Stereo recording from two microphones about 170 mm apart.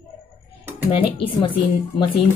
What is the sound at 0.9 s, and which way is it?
Speech, 30° left (ahead or behind).